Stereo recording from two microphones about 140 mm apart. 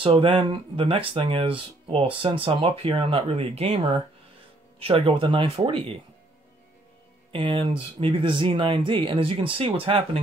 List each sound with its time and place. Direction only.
0.0 s speech: 40° right (ahead or behind)
7.3 s speech: 35° right (ahead or behind)